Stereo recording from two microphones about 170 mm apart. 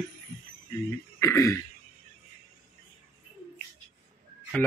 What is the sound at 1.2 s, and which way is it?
Speech, 15° left (ahead or behind).